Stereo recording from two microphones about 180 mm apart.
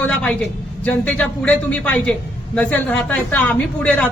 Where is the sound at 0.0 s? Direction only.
5° left (ahead or behind).